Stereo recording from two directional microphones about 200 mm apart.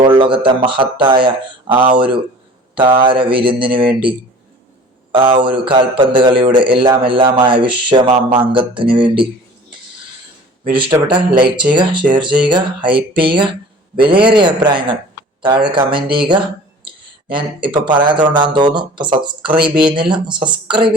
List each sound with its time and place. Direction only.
0.0 s speech: 25° right (ahead or behind)
5.3 s speech: 25° right (ahead or behind)
10.6 s speech: 25° right (ahead or behind)